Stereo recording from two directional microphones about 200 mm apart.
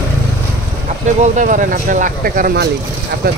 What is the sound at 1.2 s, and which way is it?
Speech, 40° right (ahead or behind).